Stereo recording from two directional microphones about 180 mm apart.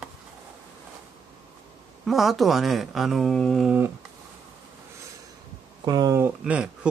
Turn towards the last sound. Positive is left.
turn(degrees=-5)  # may be behind; listen again after turning